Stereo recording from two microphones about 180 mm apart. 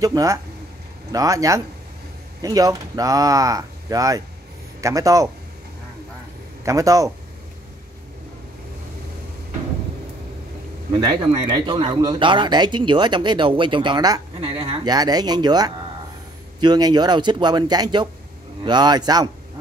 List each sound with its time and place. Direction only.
0.0 s speech: 20° right (ahead or behind)
6.6 s speech: 20° right (ahead or behind)
11.1 s speech: 25° right (ahead or behind)